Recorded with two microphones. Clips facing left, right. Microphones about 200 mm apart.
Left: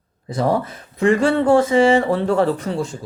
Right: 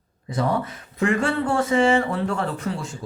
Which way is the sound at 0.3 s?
30° left (ahead or behind).